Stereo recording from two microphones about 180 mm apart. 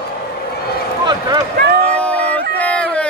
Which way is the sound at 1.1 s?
20° right (ahead or behind).